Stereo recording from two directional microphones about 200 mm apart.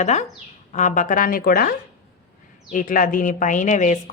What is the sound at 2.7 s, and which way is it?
Speech, 40° left (ahead or behind).